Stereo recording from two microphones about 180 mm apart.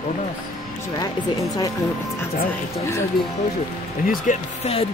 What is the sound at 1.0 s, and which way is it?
Speech, 20° left (ahead or behind).